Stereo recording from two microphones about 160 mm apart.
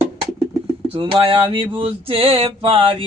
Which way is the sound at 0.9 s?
35° right (ahead or behind).